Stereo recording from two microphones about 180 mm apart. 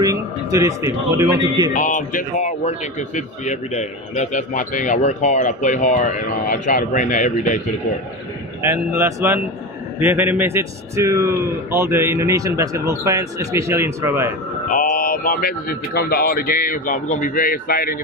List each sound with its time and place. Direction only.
0.0 s a man's voice: 20° right (ahead or behind)
1.7 s a man's voice: 45° left (ahead or behind)
8.6 s a man's voice: 15° right (ahead or behind)
14.7 s a man's voice: 45° left (ahead or behind)